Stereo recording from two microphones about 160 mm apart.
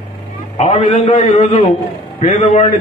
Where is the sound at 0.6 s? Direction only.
45° left (ahead or behind).